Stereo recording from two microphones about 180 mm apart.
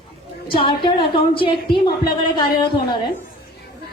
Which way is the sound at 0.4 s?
30° left (ahead or behind).